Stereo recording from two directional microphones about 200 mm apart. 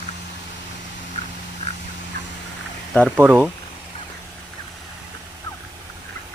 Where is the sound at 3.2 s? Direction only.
10° right (ahead or behind).